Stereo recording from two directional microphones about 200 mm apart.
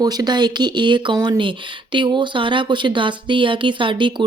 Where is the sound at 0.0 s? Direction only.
20° right (ahead or behind).